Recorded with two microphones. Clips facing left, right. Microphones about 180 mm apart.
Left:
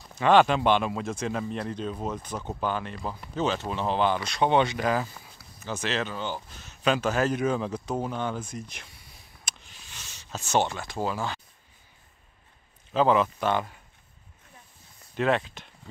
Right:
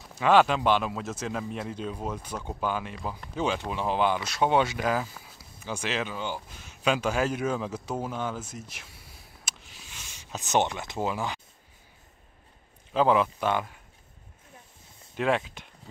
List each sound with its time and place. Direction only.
0.0 s speech: 5° right (ahead or behind)
9.4 s a sound: 5° right (ahead or behind)
12.9 s speech: 10° right (ahead or behind)
15.1 s speech: 5° right (ahead or behind)